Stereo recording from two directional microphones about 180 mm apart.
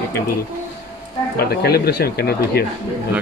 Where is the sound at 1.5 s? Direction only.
60° left (ahead or behind).